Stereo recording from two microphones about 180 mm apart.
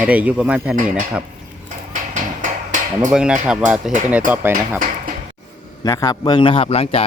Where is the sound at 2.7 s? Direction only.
45° right (ahead or behind).